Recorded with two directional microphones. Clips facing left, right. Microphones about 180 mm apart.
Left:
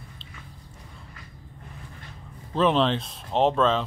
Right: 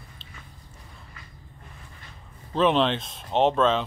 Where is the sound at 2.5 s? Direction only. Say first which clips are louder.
Even; centre (ahead or behind).